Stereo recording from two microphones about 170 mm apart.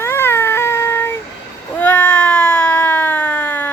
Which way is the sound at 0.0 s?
15° left (ahead or behind).